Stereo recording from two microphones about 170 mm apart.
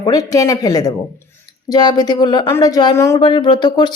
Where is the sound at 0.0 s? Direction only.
20° left (ahead or behind).